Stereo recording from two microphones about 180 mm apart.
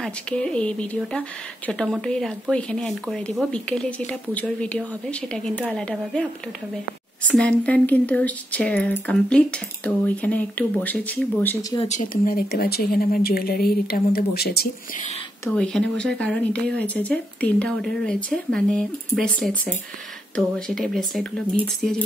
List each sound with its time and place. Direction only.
0.0 s speech: 5° left (ahead or behind)
7.2 s speech: 5° left (ahead or behind)
11.9 s speech: 50° left (ahead or behind)
15.4 s speech: 5° left (ahead or behind)